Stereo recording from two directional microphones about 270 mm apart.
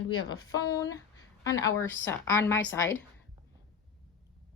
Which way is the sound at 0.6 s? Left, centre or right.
Centre.